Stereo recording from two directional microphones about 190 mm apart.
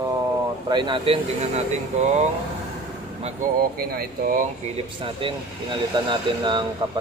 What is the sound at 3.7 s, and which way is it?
Speech, 55° right (ahead or behind).